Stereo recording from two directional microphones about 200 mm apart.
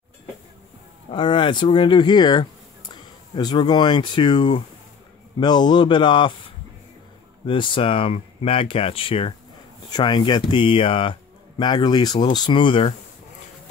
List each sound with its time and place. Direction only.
1.1 s speech: 25° left (ahead or behind)
7.4 s speech: 25° left (ahead or behind)